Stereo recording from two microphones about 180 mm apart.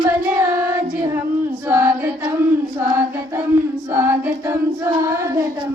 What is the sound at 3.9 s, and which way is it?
Female singing, 15° right (ahead or behind).